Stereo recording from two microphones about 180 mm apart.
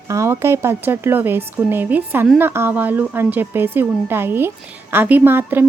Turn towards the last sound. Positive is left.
turn(degrees=-10)  # may be behind; listen again after turning